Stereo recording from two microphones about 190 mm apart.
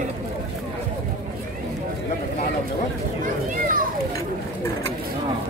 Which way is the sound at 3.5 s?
45° right (ahead or behind).